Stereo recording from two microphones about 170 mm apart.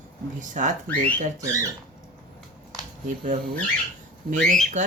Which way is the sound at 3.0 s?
45° right (ahead or behind).